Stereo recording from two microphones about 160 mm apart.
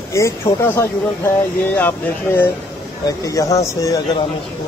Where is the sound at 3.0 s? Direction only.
20° left (ahead or behind).